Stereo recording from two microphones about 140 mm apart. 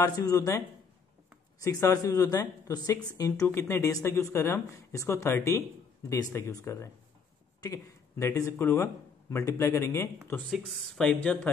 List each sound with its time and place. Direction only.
0.0 s speech: 25° left (ahead or behind)
10.3 s speech: centre (ahead or behind)